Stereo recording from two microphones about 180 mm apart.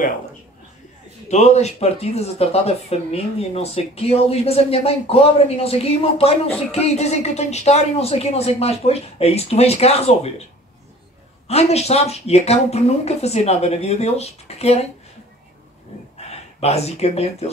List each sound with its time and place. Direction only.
1.3 s speech: 40° left (ahead or behind)
11.4 s speech: 35° left (ahead or behind)
16.3 s speech: 35° left (ahead or behind)